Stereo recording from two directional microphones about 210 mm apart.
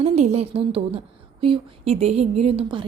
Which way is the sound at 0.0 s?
30° right (ahead or behind).